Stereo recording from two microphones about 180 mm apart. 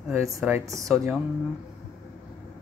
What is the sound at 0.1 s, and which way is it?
Speech, 15° right (ahead or behind).